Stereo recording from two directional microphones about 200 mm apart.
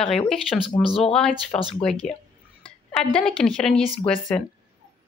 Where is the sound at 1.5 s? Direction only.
25° left (ahead or behind).